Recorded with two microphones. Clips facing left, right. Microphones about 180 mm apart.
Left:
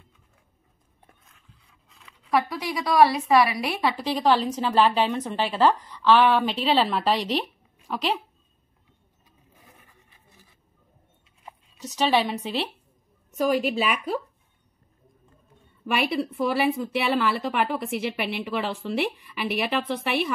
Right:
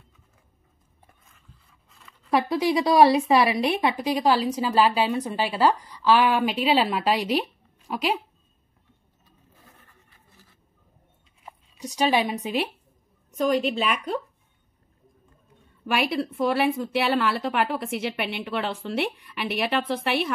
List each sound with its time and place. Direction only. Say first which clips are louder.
1.0 s a sound: even; centre (ahead or behind)
2.3 s speech: right 4 dB; 25° right (ahead or behind); by 8.2 s 10° right (ahead or behind)
9.5 s a sound: left 1 dB; 15° left (ahead or behind)
11.4 s speech: right 2 dB; 10° right (ahead or behind)
13.3 s a woman's voice: even; 5° left (ahead or behind)
15.8 s a woman's voice: even; centre (ahead or behind)